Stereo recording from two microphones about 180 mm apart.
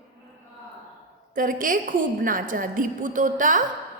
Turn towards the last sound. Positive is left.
turn(degrees=-45)  # may be behind; listen again after turning